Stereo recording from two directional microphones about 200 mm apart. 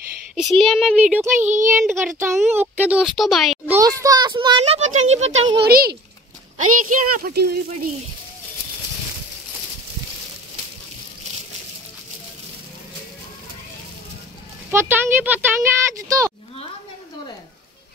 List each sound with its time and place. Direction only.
0.4 s speech: centre (ahead or behind)
3.7 s a child's voice: 15° right (ahead or behind); by 5.4 s 35° right (ahead or behind)
5.6 s speech: 50° right (ahead or behind)
14.7 s speech: 10° right (ahead or behind)